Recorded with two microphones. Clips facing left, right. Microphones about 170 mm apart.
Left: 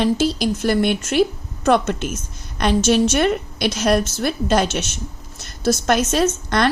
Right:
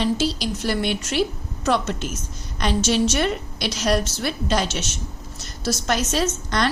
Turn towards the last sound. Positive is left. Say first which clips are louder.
# left 5 dB
turn(degrees=55)  # may be behind; listen again after turning